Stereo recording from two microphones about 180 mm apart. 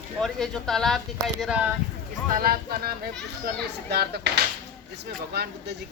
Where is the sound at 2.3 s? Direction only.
55° right (ahead or behind).